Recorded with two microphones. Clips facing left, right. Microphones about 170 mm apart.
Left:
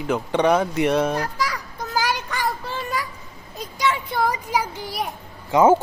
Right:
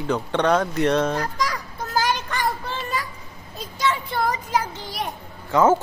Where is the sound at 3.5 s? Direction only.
15° left (ahead or behind).